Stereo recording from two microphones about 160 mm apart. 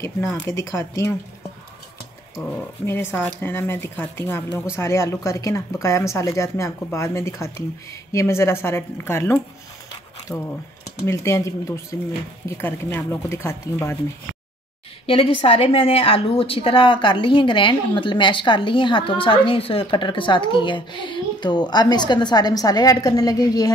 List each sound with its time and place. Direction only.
0.5 s speech: 20° left (ahead or behind)
2.5 s speech: 15° left (ahead or behind)
15.0 s a woman's voice: 35° left (ahead or behind)